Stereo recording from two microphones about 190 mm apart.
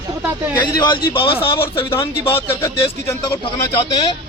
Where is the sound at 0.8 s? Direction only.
25° left (ahead or behind).